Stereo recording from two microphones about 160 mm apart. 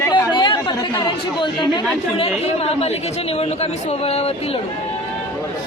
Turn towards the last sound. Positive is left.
turn(degrees=40)  # may be behind; listen again after turning